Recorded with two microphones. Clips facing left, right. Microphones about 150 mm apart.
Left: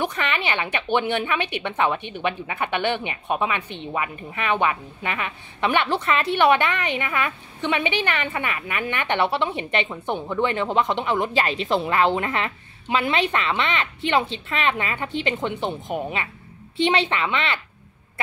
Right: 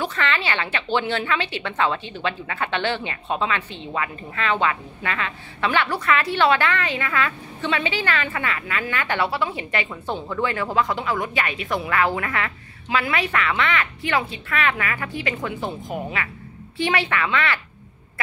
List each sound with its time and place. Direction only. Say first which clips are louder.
0.0 s a woman's voice: even; 15° left (ahead or behind)